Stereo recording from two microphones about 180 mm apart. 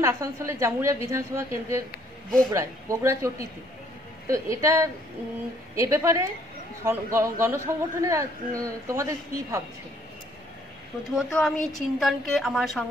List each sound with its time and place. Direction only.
0.0 s a man's voice: 15° right (ahead or behind)
11.1 s a woman's voice: centre (ahead or behind)